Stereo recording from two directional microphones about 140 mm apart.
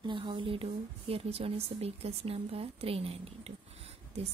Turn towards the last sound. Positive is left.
turn(degrees=-45)  # may be behind; listen again after turning